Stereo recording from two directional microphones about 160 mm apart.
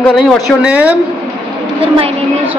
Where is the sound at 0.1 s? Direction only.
Centre (ahead or behind).